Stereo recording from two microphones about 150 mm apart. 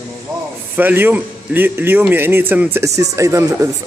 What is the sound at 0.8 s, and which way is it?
A man's voice, 10° right (ahead or behind).